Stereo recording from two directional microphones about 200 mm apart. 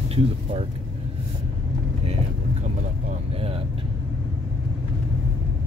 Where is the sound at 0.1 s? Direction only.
30° right (ahead or behind).